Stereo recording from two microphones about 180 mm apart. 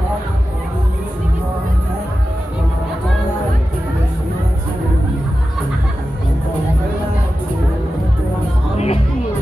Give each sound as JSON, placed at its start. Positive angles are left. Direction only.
{"t": 8.7, "sound": "music", "side_deg": 35}